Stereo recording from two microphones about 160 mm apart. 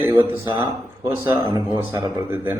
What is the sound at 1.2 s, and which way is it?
Speech, 15° right (ahead or behind).